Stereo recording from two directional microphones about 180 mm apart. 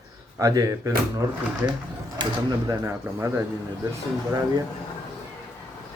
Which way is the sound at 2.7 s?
15° right (ahead or behind).